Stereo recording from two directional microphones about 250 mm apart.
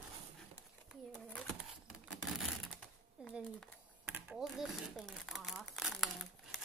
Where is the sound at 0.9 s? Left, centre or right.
Centre.